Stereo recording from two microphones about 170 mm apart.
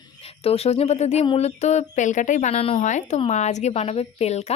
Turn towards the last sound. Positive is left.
turn(degrees=40)  # may be behind; listen again after turning